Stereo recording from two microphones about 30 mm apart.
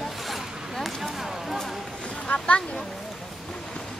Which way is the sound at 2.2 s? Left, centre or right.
Left.